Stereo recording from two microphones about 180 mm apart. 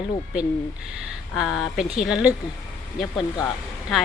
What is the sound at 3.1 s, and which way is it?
Speech, 20° left (ahead or behind).